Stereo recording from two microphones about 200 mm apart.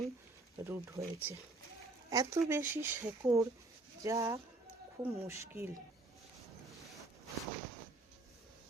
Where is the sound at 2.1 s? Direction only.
15° right (ahead or behind).